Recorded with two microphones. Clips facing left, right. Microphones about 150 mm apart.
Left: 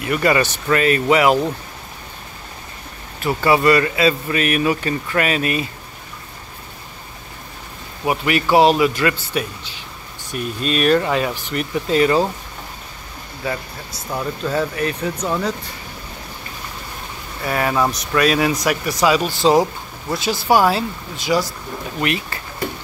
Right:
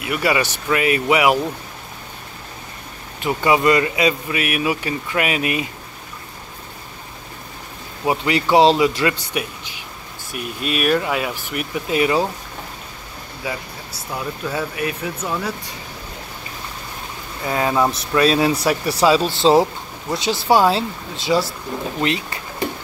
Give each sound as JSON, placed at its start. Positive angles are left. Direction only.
{"t": 0.0, "sound": "speech", "side_deg": -10}
{"t": 3.2, "sound": "speech", "side_deg": -15}
{"t": 8.0, "sound": "a man's voice", "side_deg": -20}
{"t": 13.4, "sound": "speech", "side_deg": -10}
{"t": 17.5, "sound": "a man's voice", "side_deg": -20}
{"t": 19.5, "sound": "speech", "side_deg": 0}
{"t": 20.5, "sound": "a man's voice", "side_deg": -25}